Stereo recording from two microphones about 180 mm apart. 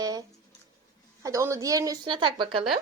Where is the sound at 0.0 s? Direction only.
20° right (ahead or behind).